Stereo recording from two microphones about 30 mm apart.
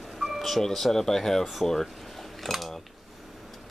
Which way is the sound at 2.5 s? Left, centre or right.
Centre.